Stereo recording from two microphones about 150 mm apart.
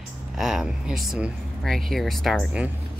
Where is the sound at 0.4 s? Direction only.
Centre (ahead or behind).